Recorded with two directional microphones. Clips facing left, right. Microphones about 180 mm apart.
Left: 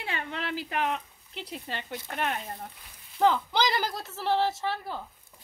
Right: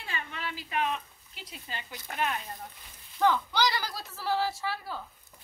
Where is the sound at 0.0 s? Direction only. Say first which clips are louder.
Left 4 dB; 65° left (ahead or behind).